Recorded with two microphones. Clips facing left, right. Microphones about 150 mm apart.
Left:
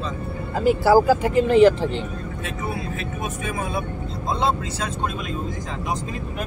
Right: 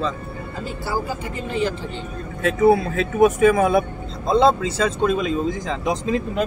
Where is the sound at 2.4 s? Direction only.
80° right.